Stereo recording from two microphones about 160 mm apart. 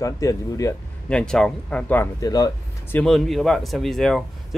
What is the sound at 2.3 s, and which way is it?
Speech, 25° left (ahead or behind).